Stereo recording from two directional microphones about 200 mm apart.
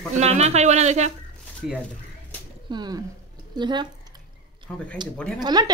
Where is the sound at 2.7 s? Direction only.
20° right (ahead or behind).